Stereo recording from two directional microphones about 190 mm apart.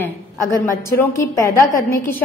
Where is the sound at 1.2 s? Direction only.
15° left (ahead or behind).